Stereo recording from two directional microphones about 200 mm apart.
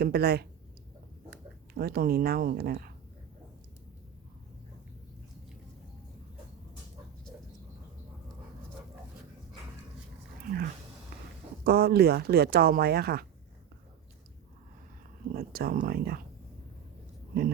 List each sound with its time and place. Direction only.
0.0 s speech: 50° right (ahead or behind)
1.7 s speech: 50° right (ahead or behind)
10.4 s speech: 45° right (ahead or behind)
11.1 s a sound: 50° right (ahead or behind)
11.6 s speech: 50° right (ahead or behind)
15.3 s speech: 50° right (ahead or behind)